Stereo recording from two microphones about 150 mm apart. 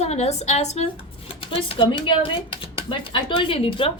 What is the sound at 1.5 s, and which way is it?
Speech, 35° left (ahead or behind).